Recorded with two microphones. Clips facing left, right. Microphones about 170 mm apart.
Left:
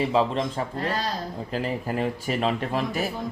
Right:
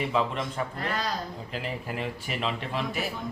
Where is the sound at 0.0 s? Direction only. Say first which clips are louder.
Left 5 dB; 30° left (ahead or behind).